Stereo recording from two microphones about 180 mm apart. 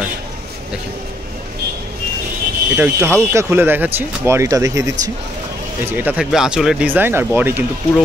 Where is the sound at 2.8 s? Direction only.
15° right (ahead or behind).